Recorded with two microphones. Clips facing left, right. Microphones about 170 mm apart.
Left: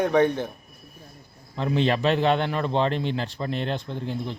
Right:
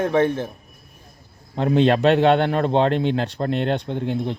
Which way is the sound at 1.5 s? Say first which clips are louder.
Right 6 dB; 55° right (ahead or behind).